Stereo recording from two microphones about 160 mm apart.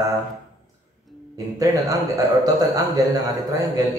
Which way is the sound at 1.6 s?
20° right (ahead or behind).